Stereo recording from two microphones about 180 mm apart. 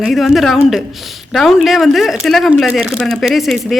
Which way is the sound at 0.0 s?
Centre (ahead or behind).